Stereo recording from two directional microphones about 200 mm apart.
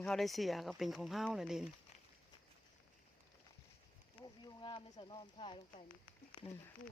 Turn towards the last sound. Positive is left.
turn(degrees=25)  # may be behind; listen again after turning